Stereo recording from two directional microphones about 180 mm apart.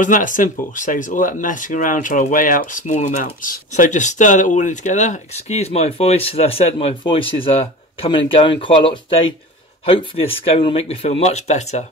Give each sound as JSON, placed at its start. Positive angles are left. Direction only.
{"t": 0.0, "sound": "speech", "side_deg": 45}